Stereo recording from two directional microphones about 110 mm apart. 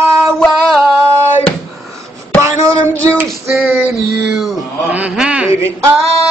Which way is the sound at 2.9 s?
10° left (ahead or behind).